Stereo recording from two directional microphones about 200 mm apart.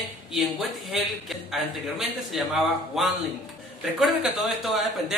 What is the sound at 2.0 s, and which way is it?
A man's voice, centre (ahead or behind).